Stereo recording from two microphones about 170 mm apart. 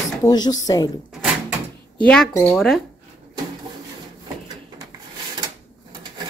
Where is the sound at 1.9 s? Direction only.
5° left (ahead or behind).